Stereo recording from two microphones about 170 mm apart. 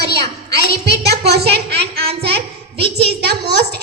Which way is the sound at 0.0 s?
75° right (ahead or behind).